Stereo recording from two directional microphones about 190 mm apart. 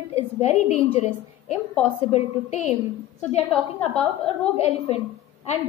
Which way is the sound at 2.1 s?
35° left (ahead or behind).